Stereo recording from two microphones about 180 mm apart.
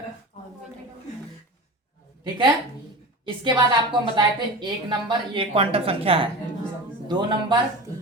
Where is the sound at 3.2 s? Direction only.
25° right (ahead or behind).